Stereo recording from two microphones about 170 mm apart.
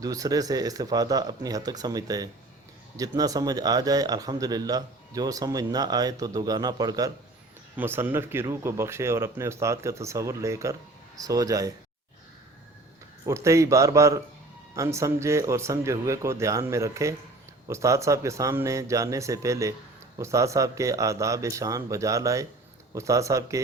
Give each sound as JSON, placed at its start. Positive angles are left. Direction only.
{"t": 0.0, "sound": "a man's voice", "side_deg": -20}
{"t": 7.8, "sound": "a man's voice", "side_deg": -10}
{"t": 13.2, "sound": "a man's voice", "side_deg": -15}